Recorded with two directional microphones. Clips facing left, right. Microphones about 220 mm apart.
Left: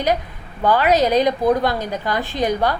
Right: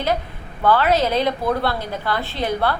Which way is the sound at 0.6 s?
15° left (ahead or behind).